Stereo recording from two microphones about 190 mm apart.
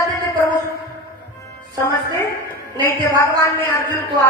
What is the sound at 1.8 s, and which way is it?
A woman's voice, 15° left (ahead or behind).